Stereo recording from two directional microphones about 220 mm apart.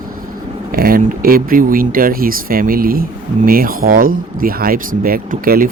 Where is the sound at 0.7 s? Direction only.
40° right (ahead or behind).